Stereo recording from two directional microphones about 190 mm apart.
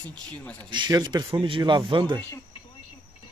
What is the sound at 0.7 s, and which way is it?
Speech, 25° right (ahead or behind).